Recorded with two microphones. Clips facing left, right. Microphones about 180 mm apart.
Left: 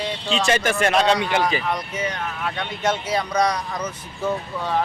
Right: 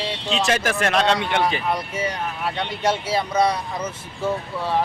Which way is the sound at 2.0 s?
35° right (ahead or behind).